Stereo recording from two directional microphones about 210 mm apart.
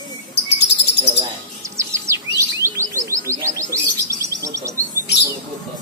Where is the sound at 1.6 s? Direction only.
15° right (ahead or behind).